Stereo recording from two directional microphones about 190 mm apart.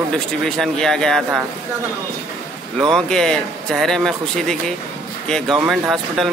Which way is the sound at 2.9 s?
5° left (ahead or behind).